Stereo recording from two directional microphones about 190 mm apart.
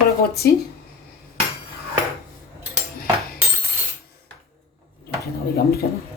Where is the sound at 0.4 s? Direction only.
55° left (ahead or behind).